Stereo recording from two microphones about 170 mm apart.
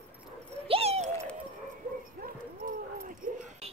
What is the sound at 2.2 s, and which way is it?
Dog, 60° right (ahead or behind).